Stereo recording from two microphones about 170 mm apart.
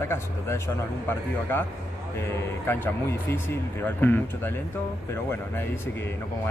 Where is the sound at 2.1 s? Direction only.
15° left (ahead or behind).